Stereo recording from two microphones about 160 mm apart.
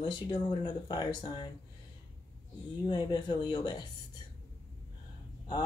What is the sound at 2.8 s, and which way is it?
Speech, 30° left (ahead or behind).